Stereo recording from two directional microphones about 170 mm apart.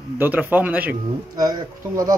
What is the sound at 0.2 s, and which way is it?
Speech, 10° right (ahead or behind).